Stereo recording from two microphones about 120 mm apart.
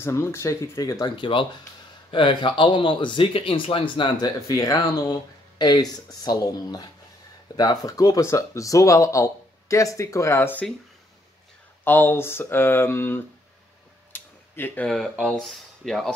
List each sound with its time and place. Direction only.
0.0 s speech: 20° left (ahead or behind); by 4.3 s 45° left (ahead or behind)
4.5 s speech: 30° left (ahead or behind)
11.8 s speech: 20° left (ahead or behind)
14.1 s a sound: 15° left (ahead or behind)
14.9 s speech: centre (ahead or behind)